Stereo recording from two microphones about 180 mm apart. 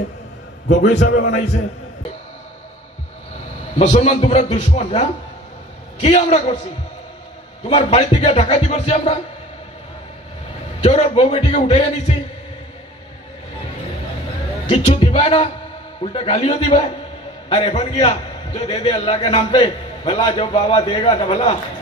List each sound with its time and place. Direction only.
0.7 s a man's voice: 65° left (ahead or behind)
3.7 s speech: 35° left (ahead or behind)
7.7 s speech: 35° left (ahead or behind)
10.8 s speech: 35° left (ahead or behind)
14.7 s a man's voice: 30° left (ahead or behind)